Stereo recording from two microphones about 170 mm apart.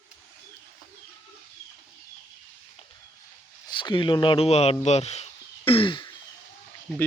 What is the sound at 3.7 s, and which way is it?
Speech, 30° left (ahead or behind).